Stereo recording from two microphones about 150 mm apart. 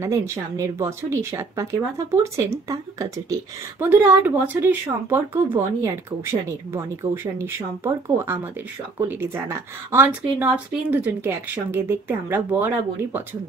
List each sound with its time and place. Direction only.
0.0 s speech: 15° right (ahead or behind)